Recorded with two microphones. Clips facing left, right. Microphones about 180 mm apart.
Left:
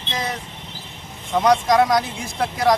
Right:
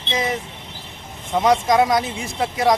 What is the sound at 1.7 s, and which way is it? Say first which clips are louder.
Speech: even; centre (ahead or behind).